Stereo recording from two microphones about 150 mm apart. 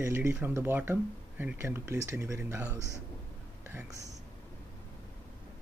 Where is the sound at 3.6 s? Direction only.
15° right (ahead or behind).